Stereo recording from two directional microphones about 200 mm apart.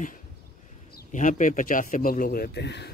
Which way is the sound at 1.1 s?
40° left (ahead or behind).